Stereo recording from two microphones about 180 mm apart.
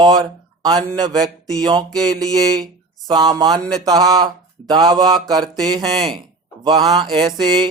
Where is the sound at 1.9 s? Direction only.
5° left (ahead or behind).